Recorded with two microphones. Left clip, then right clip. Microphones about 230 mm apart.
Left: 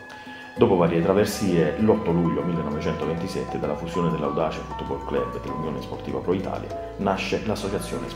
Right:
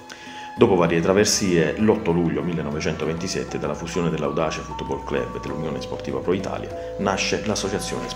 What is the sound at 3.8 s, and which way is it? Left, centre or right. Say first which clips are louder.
Speech: right 1 dB; right.